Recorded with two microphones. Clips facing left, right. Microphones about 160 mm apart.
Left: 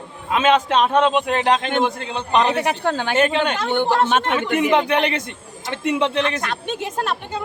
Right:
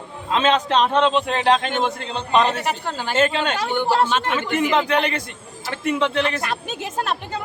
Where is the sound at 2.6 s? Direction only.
65° left (ahead or behind).